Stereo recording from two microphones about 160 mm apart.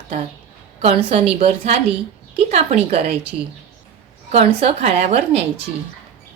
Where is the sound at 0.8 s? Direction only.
40° right (ahead or behind).